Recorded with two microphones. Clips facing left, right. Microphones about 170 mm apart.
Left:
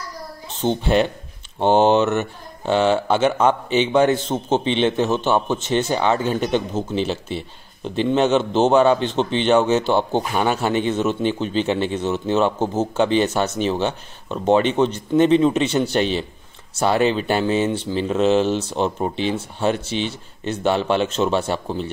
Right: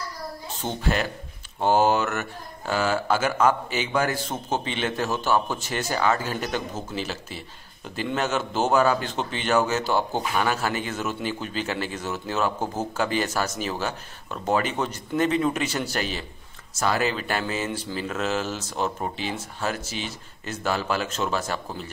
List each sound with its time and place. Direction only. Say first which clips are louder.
0.5 s a sound: left 11 dB; 25° left (ahead or behind)
1.6 s speech: left 5 dB; 25° left (ahead or behind)
8.0 s speech: left 9 dB; 25° left (ahead or behind)